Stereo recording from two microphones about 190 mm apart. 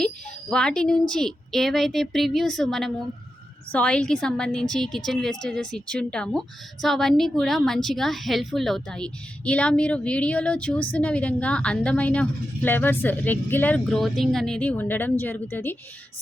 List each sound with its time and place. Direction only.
0.5 s a woman's voice: 5° left (ahead or behind)